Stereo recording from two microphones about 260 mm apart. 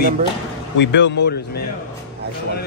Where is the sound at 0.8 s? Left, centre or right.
Left.